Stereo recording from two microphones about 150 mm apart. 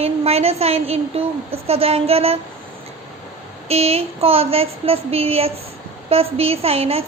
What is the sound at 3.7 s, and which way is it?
A woman's voice, 45° right (ahead or behind).